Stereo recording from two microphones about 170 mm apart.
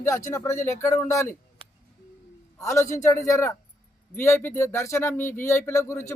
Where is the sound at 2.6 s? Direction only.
15° left (ahead or behind).